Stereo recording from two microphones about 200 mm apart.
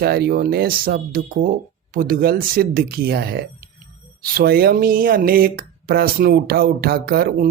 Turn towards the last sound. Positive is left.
turn(degrees=-45)  # may be behind; listen again after turning